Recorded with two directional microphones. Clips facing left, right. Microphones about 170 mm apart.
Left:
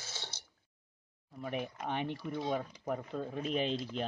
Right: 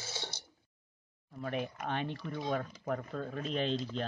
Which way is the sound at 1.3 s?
10° left (ahead or behind).